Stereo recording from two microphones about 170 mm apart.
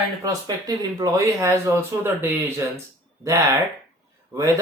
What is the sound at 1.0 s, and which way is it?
Speech, 20° right (ahead or behind).